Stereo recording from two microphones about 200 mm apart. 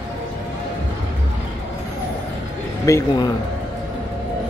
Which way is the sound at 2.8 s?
15° left (ahead or behind).